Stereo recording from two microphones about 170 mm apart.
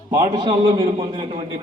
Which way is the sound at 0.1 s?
25° right (ahead or behind).